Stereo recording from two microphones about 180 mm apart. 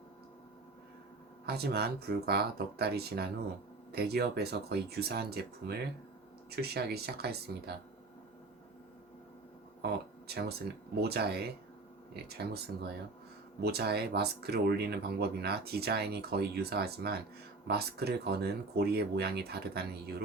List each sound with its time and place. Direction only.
1.5 s speech: 60° right (ahead or behind)
9.8 s a sound: 65° right (ahead or behind)
10.9 s speech: 60° right (ahead or behind)